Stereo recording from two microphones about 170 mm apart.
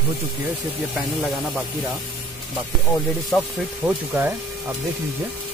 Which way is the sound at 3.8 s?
10° right (ahead or behind).